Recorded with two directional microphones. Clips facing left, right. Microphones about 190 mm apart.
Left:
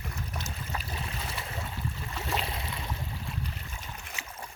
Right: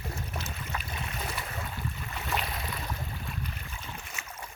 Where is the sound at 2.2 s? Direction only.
30° left (ahead or behind).